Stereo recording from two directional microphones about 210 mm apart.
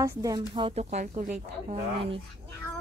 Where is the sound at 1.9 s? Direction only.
25° right (ahead or behind).